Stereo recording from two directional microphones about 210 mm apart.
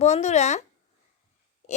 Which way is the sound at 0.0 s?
30° left (ahead or behind).